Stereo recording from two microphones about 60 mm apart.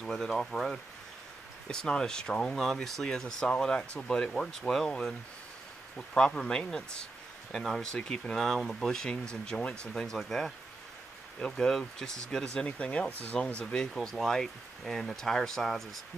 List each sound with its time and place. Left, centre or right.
0.0 s speech: centre
13.9 s speech: centre